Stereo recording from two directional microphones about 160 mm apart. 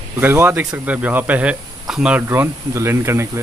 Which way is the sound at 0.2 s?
15° right (ahead or behind).